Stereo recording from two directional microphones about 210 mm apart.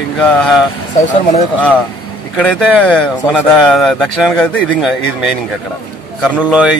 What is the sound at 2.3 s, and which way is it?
A man's voice, 5° left (ahead or behind).